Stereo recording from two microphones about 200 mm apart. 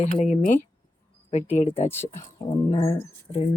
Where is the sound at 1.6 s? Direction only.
30° left (ahead or behind).